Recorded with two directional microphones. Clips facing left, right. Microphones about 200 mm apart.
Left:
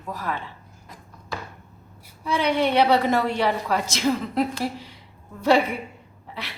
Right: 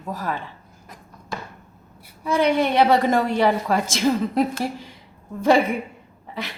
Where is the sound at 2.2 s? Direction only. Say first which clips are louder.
Right 3 dB; 50° right (ahead or behind).